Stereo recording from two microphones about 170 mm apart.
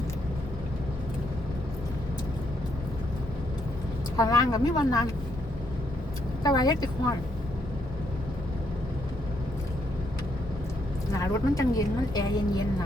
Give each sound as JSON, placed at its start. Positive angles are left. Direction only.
{"t": 4.2, "sound": "a woman's voice", "side_deg": 20}
{"t": 6.4, "sound": "a woman's voice", "side_deg": 25}
{"t": 11.2, "sound": "a woman's voice", "side_deg": 20}